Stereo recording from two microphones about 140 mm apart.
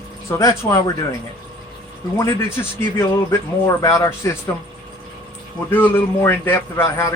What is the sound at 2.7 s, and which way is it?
A man's voice, 20° left (ahead or behind).